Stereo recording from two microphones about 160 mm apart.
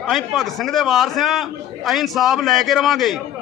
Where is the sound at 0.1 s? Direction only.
Centre (ahead or behind).